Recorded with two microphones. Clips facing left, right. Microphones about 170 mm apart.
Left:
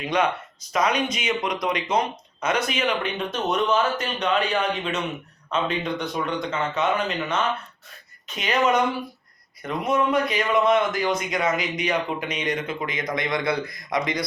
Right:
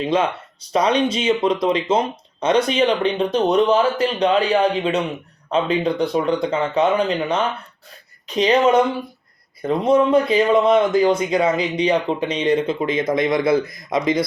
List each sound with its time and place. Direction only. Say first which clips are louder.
0.0 s a man's voice: right 4 dB; 25° right (ahead or behind)